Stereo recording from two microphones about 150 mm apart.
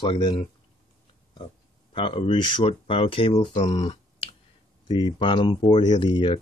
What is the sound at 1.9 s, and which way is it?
Speech, 35° left (ahead or behind).